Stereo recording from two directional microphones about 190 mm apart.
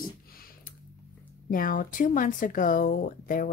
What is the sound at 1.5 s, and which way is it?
Speech, 45° left (ahead or behind).